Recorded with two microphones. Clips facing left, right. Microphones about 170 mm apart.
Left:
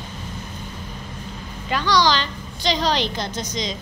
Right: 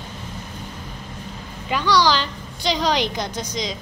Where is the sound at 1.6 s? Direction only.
10° right (ahead or behind).